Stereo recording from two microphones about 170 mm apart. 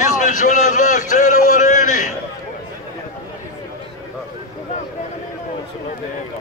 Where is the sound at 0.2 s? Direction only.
50° left (ahead or behind).